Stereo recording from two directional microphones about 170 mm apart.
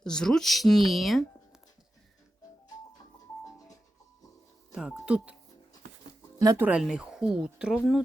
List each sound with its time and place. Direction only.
0.0 s speech: 5° left (ahead or behind)
3.4 s music: 20° left (ahead or behind)
4.7 s speech: 5° right (ahead or behind)
6.4 s speech: 20° right (ahead or behind)
6.7 s speech: 5° right (ahead or behind)